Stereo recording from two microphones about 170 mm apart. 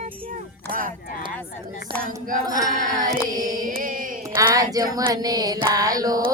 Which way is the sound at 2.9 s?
20° right (ahead or behind).